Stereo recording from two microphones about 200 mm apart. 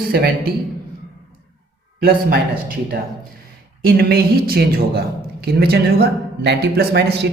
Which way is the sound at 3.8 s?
50° right (ahead or behind).